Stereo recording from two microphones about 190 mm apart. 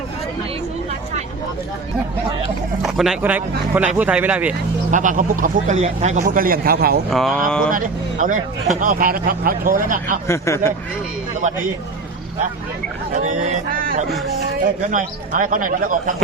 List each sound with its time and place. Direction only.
2.8 s speech: centre (ahead or behind)
4.9 s speech: 45° right (ahead or behind)
7.1 s speech: centre (ahead or behind)
7.7 s speech: 45° right (ahead or behind)
10.2 s speech: 15° left (ahead or behind)
13.1 s speech: 40° right (ahead or behind)